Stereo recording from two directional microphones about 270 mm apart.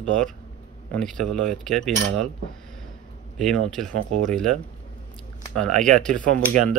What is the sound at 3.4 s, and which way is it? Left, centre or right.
Speech, centre.